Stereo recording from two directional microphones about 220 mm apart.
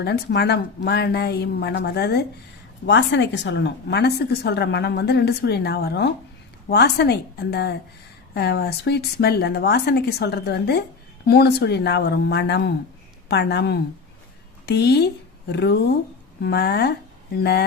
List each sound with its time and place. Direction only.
0.0 s a woman's voice: 50° left (ahead or behind)